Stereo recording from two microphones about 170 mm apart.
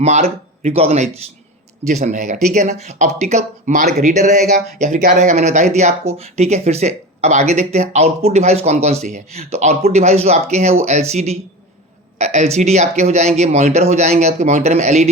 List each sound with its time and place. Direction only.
0.0 s speech: 40° right (ahead or behind)